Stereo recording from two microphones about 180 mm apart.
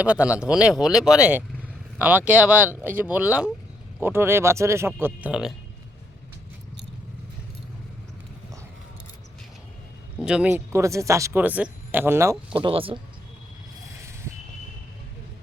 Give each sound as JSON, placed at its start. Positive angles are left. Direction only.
{"t": 0.0, "sound": "speech", "side_deg": -5}
{"t": 10.2, "sound": "speech", "side_deg": -5}
{"t": 12.5, "sound": "speech", "side_deg": -30}